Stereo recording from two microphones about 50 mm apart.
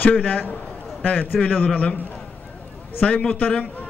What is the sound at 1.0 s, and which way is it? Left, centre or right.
A man's voice, left.